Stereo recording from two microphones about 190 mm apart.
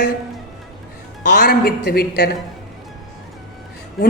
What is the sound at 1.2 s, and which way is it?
A woman's voice, 55° left (ahead or behind).